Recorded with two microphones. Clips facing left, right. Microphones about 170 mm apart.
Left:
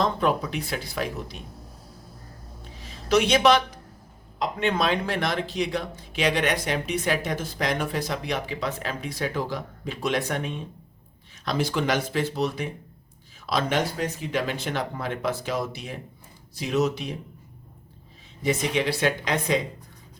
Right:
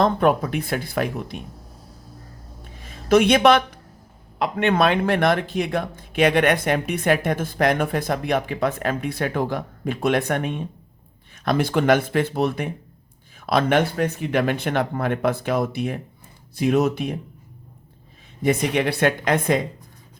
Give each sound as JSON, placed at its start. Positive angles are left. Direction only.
{"t": 0.0, "sound": "speech", "side_deg": -55}
{"t": 2.7, "sound": "a sound", "side_deg": -55}
{"t": 4.4, "sound": "speech", "side_deg": -60}
{"t": 18.4, "sound": "speech", "side_deg": -55}